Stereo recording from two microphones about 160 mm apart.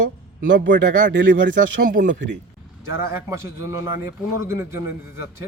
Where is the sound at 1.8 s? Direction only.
60° right (ahead or behind).